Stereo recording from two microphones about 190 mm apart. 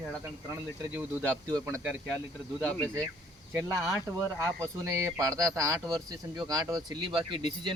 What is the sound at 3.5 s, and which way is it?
Speech, 15° right (ahead or behind).